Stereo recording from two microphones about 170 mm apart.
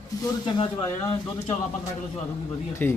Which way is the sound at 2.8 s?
10° left (ahead or behind).